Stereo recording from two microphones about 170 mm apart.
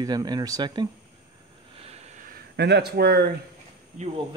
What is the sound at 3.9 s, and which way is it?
Speech, 40° right (ahead or behind).